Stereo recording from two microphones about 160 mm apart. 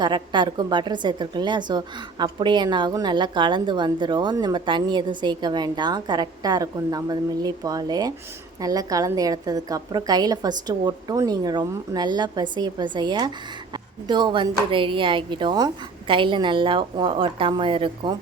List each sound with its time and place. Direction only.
0.0 s a woman's voice: 30° right (ahead or behind)